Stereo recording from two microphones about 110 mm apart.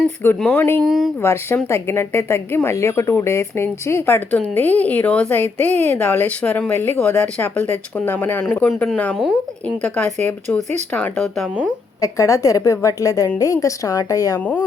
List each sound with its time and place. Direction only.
0.5 s speech: 20° left (ahead or behind)
0.8 s speech: 5° right (ahead or behind)
1.2 s a woman's voice: 25° left (ahead or behind)
10.9 s a woman's voice: 5° left (ahead or behind)
11.9 s speech: 30° left (ahead or behind)
14.3 s a woman's voice: 15° left (ahead or behind)